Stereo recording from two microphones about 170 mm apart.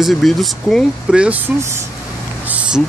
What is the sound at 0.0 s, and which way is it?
Speech, centre (ahead or behind).